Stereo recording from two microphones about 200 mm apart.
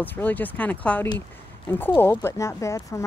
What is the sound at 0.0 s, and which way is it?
A woman's voice, 10° left (ahead or behind).